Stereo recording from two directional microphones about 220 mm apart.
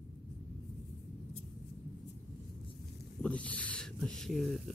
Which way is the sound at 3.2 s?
5° left (ahead or behind).